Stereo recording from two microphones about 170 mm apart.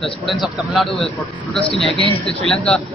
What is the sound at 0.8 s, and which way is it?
Speech, 30° left (ahead or behind).